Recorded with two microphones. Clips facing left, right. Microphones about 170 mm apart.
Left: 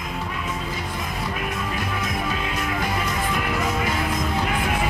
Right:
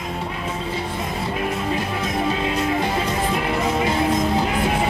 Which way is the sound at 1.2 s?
30° right (ahead or behind).